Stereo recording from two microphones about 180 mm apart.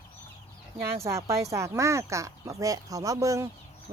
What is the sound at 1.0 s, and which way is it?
Speech, 15° right (ahead or behind).